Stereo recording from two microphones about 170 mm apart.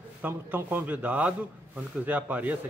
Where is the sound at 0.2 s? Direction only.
10° right (ahead or behind).